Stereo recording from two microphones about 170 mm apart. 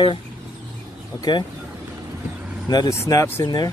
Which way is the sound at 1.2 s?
25° left (ahead or behind).